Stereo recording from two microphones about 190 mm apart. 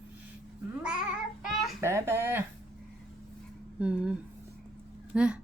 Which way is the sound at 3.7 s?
5° right (ahead or behind).